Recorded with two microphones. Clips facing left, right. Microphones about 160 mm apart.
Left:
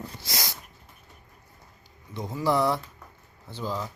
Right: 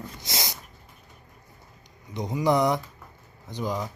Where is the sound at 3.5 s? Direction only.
15° right (ahead or behind).